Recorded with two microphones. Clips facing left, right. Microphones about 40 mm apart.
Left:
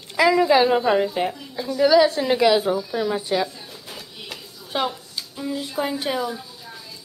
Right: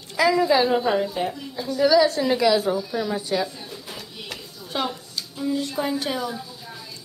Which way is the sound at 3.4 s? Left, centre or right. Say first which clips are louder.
Left 1 dB; centre.